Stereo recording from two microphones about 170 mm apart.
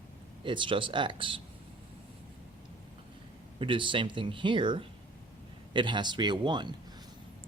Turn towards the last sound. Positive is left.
turn(degrees=-25)  # may be behind; listen again after turning